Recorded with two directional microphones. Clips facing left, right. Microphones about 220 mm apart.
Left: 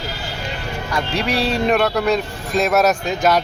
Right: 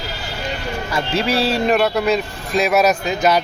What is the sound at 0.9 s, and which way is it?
Speech, centre (ahead or behind).